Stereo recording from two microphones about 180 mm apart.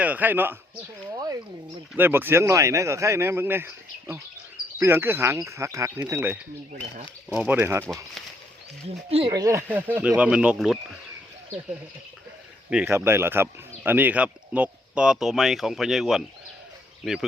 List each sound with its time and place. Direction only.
0.0 s speech: 10° right (ahead or behind)
1.1 s a sound: 20° right (ahead or behind)
2.0 s speech: 10° right (ahead or behind)
9.0 s speech: 35° right (ahead or behind)
9.3 s speech: 20° right (ahead or behind)
12.7 s speech: 15° right (ahead or behind)